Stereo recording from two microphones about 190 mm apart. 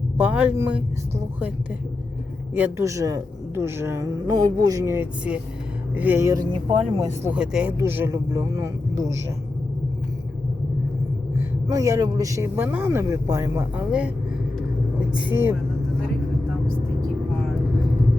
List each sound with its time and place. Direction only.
0.2 s a woman's voice: 10° right (ahead or behind)
2.6 s a woman's voice: 15° right (ahead or behind)
11.3 s a woman's voice: 15° right (ahead or behind)
15.1 s a woman's voice: 10° right (ahead or behind)